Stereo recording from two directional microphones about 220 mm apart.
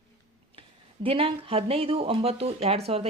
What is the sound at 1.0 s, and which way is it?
Speech, 25° right (ahead or behind).